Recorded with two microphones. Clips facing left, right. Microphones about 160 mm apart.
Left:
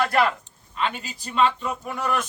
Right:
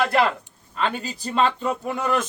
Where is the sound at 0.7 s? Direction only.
35° right (ahead or behind).